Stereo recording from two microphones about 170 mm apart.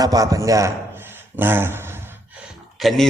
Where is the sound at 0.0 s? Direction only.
20° right (ahead or behind).